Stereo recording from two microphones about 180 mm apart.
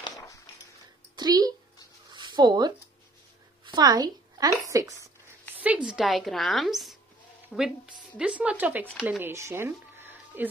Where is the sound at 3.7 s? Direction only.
20° right (ahead or behind).